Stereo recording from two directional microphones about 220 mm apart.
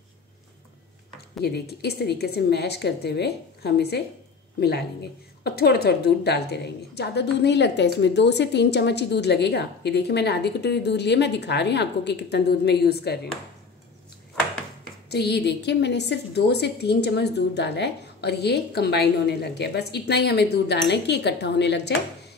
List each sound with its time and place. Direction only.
1.4 s a woman's voice: 45° left (ahead or behind)
15.0 s a woman's voice: 50° left (ahead or behind)